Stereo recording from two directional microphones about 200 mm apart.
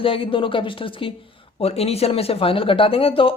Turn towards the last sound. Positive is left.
turn(degrees=25)  # may be behind; listen again after turning